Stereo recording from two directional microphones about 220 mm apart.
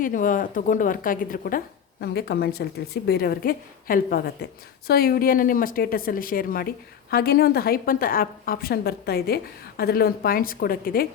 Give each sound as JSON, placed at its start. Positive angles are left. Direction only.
{"t": 0.0, "sound": "a woman's voice", "side_deg": 35}